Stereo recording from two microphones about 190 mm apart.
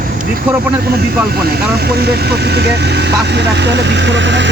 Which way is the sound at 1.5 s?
55° right (ahead or behind).